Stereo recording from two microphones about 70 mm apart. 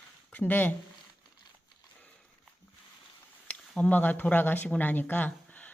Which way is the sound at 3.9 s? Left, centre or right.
Left.